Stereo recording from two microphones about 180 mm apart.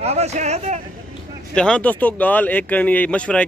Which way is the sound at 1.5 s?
5° left (ahead or behind).